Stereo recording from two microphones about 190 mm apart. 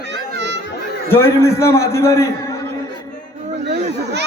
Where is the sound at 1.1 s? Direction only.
15° left (ahead or behind).